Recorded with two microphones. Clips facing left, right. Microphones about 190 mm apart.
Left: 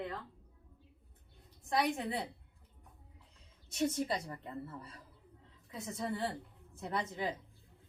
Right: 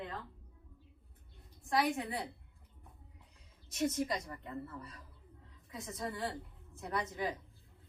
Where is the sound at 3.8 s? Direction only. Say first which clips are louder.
Even; 30° left (ahead or behind).